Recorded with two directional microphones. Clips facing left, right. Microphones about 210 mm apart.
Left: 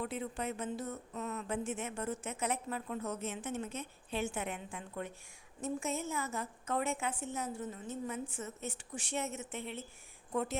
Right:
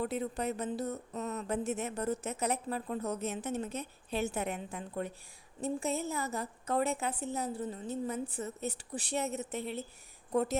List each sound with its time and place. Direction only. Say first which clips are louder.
0.0 s speech: right 4 dB; 40° right (ahead or behind)